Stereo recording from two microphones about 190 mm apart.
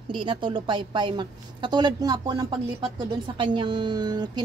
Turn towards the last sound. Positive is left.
turn(degrees=-20)  # may be behind; listen again after turning